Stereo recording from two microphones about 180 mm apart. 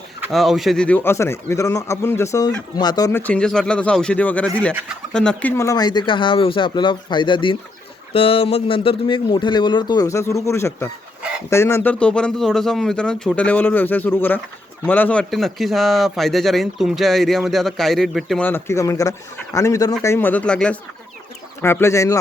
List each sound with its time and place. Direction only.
0.3 s speech: centre (ahead or behind)
18.4 s speech: 15° left (ahead or behind)